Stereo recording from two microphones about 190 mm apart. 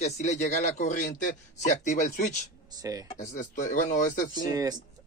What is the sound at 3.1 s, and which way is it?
Speech, 45° left (ahead or behind).